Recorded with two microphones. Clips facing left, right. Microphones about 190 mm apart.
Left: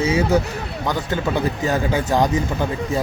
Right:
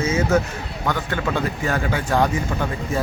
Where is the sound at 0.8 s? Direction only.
15° left (ahead or behind).